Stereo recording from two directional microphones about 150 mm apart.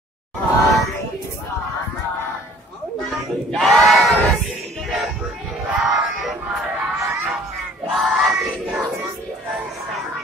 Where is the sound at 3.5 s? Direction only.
5° left (ahead or behind).